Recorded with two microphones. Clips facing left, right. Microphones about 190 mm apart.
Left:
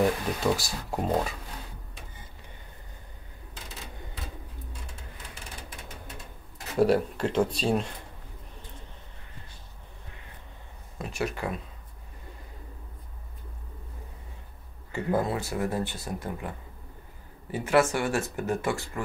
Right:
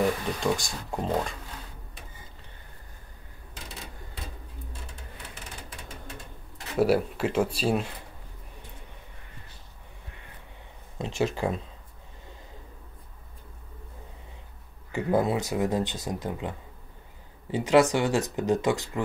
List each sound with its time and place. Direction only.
0.4 s speech: 5° left (ahead or behind)
6.8 s speech: 5° right (ahead or behind)
11.0 s speech: 25° right (ahead or behind)
14.9 s speech: 15° right (ahead or behind)